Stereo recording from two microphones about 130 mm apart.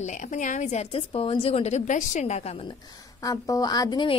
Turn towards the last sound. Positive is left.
turn(degrees=35)  # may be behind; listen again after turning